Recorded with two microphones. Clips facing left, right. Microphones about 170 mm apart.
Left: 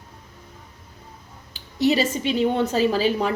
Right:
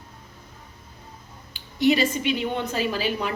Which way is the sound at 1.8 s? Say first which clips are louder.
Even; 35° left (ahead or behind).